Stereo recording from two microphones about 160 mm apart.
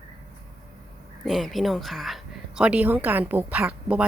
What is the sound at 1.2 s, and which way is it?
Speech, centre (ahead or behind).